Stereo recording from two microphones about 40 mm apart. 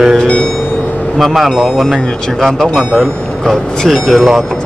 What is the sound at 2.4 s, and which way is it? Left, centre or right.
Speech, centre.